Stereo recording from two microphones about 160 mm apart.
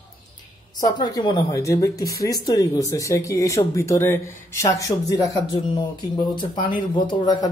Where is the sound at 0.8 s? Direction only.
25° left (ahead or behind).